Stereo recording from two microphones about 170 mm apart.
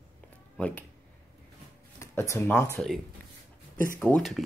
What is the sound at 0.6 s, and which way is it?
Speech, 10° left (ahead or behind).